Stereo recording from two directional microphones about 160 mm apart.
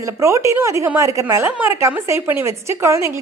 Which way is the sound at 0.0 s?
20° right (ahead or behind).